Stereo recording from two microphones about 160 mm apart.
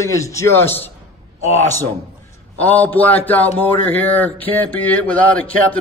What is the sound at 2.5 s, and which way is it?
Speech, 10° left (ahead or behind).